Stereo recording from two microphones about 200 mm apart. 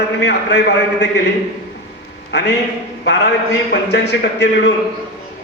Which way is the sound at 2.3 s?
60° left (ahead or behind).